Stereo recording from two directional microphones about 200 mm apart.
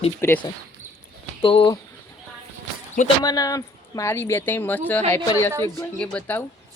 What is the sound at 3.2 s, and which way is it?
Speech, 20° left (ahead or behind).